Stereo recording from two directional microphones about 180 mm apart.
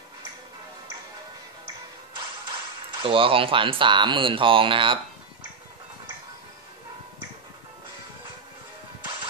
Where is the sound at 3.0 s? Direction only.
30° right (ahead or behind).